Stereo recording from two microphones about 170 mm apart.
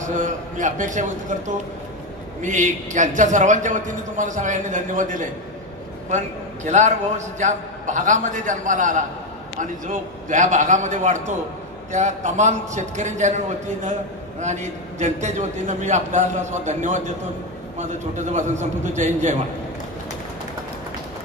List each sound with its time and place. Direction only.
0.0 s a man's voice: 45° right (ahead or behind)
2.4 s a man's voice: 45° right (ahead or behind)
14.4 s a man's voice: 45° right (ahead or behind)